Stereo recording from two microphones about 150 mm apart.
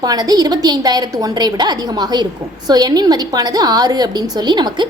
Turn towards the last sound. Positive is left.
turn(degrees=-30)  # may be behind; listen again after turning